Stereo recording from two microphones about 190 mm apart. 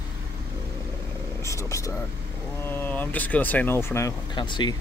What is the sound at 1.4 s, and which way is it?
Speech, 15° left (ahead or behind).